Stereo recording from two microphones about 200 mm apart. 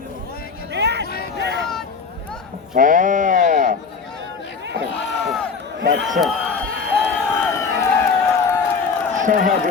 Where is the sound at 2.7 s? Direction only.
40° right (ahead or behind).